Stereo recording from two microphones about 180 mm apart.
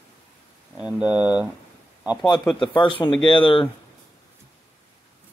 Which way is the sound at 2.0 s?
Centre (ahead or behind).